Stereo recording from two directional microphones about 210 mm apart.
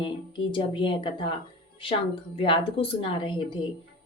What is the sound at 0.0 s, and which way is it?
Speech, 25° left (ahead or behind).